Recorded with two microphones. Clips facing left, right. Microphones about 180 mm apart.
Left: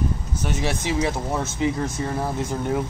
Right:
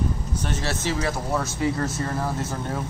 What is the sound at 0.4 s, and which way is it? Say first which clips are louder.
Speech: left 3 dB; 10° left (ahead or behind).